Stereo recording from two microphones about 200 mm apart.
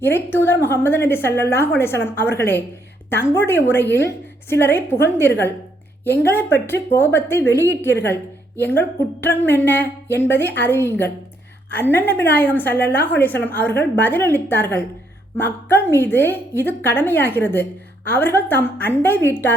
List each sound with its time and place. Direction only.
0.0 s a woman's voice: 10° left (ahead or behind)
8.6 s speech: 55° left (ahead or behind)
9.4 s a woman's voice: 10° left (ahead or behind)